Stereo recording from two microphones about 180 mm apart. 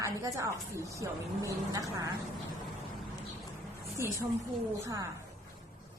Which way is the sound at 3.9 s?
15° right (ahead or behind).